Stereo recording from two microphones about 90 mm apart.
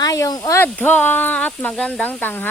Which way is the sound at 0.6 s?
20° left (ahead or behind).